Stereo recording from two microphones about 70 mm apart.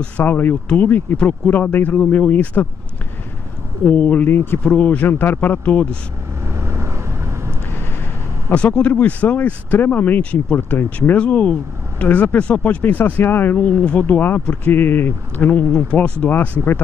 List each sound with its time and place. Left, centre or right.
0.2 s speech: left
3.9 s speech: left
6.4 s vehicle: right
8.5 s speech: centre
15.7 s speech: centre